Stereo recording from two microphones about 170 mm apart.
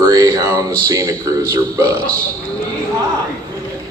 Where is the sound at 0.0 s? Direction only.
20° right (ahead or behind).